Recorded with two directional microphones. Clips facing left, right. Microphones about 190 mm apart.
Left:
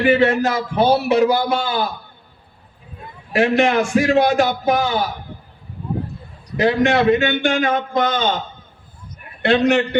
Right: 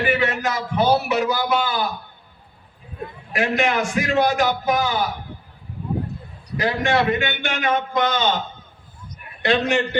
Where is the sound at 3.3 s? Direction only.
30° left (ahead or behind).